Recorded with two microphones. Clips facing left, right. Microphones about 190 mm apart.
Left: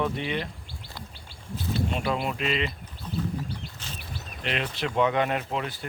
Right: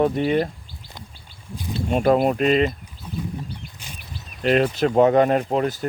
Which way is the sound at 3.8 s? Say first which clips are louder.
Even; 10° right (ahead or behind).